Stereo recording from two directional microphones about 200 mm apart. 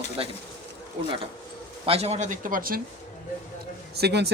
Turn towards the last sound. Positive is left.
turn(degrees=-55)  # may be behind; listen again after turning